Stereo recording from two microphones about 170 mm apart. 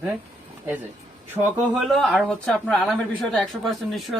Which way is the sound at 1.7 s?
Centre (ahead or behind).